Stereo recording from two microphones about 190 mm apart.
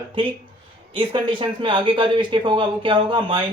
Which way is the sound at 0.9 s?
25° right (ahead or behind).